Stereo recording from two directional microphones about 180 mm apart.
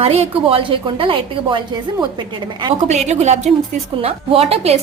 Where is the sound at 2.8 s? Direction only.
40° right (ahead or behind).